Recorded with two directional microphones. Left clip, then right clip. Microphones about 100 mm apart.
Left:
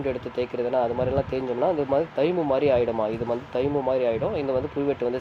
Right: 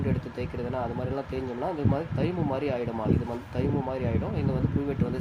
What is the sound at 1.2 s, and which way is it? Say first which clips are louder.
Speech: left 7 dB; 25° left (ahead or behind).